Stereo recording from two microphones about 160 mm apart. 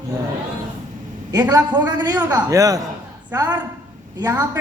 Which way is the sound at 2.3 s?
20° right (ahead or behind).